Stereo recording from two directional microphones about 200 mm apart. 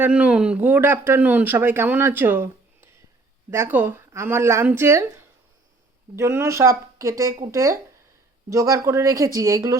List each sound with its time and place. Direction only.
0.0 s speech: 5° right (ahead or behind)